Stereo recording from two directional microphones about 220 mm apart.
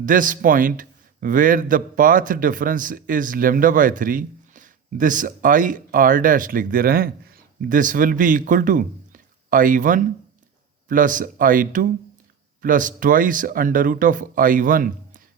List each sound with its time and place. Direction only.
0.0 s a man's voice: 35° right (ahead or behind)